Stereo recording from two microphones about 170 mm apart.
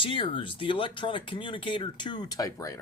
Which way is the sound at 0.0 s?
30° left (ahead or behind).